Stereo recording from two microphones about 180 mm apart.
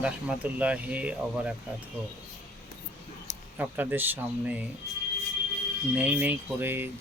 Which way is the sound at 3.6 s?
10° right (ahead or behind).